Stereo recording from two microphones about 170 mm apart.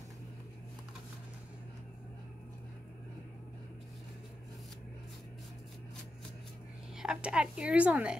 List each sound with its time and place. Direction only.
7.0 s a woman's voice: 5° right (ahead or behind)